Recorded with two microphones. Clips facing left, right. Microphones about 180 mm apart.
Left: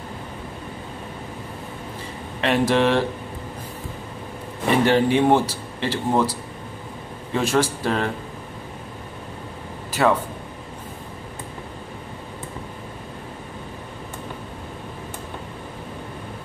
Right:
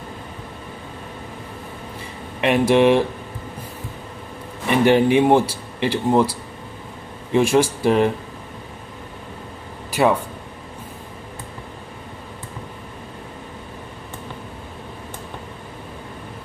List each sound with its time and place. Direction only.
2.4 s speech: 15° right (ahead or behind)
4.8 s speech: 15° right (ahead or behind)
7.3 s speech: 15° right (ahead or behind)
10.0 s speech: 20° right (ahead or behind)